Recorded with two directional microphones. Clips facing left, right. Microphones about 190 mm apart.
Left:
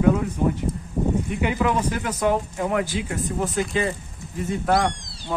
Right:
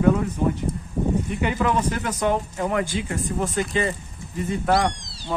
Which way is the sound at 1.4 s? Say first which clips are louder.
Left 1 dB; 10° left (ahead or behind).